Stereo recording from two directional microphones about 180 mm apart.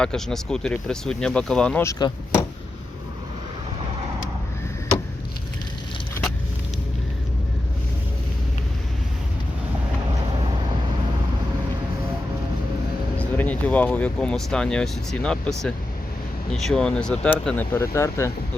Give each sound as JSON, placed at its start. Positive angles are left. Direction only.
{"t": 0.0, "sound": "speech", "side_deg": 5}
{"t": 1.8, "sound": "speech", "side_deg": 20}
{"t": 13.1, "sound": "speech", "side_deg": 10}